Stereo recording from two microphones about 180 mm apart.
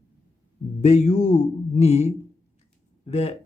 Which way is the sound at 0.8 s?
40° left (ahead or behind).